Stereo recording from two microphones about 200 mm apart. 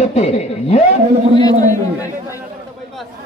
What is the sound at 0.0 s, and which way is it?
Speech, 35° left (ahead or behind).